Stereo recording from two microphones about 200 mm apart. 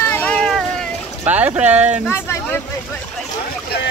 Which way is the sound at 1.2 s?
10° right (ahead or behind).